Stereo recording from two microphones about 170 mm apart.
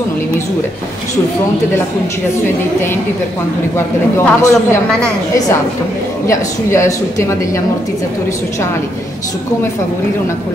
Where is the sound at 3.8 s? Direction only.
15° left (ahead or behind).